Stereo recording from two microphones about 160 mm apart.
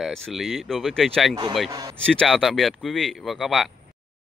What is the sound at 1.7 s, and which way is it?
Speech, 20° right (ahead or behind).